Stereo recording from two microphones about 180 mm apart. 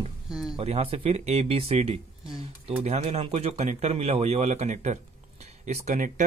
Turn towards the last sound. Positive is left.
turn(degrees=-45)  # may be behind; listen again after turning